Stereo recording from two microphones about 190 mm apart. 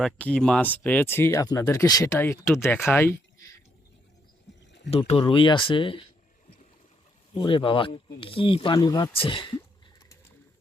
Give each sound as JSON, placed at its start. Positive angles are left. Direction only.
{"t": 0.0, "sound": "speech", "side_deg": 5}
{"t": 4.9, "sound": "speech", "side_deg": 30}
{"t": 7.3, "sound": "speech", "side_deg": 25}